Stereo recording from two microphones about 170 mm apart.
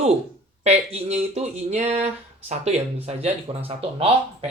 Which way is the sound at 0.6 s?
40° right (ahead or behind).